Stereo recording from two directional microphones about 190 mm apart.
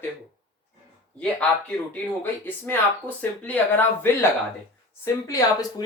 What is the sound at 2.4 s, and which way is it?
Speech, 10° left (ahead or behind).